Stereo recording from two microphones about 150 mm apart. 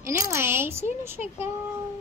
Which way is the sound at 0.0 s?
15° right (ahead or behind).